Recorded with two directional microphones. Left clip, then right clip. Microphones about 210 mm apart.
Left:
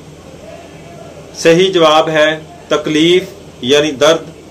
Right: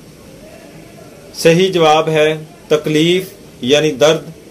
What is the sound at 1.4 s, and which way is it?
Speech, 35° right (ahead or behind).